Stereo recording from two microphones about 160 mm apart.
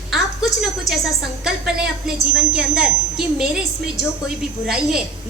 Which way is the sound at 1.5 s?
Centre (ahead or behind).